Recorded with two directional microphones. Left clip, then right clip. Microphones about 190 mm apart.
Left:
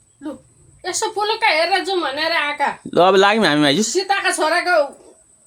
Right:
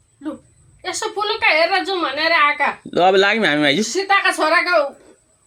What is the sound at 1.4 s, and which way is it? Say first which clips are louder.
A woman's voice: right 2 dB; 50° left (ahead or behind).